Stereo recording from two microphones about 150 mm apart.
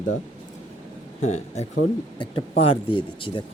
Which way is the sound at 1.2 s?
50° left (ahead or behind).